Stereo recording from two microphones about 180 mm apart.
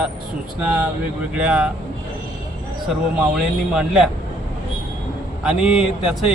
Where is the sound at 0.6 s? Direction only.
10° right (ahead or behind).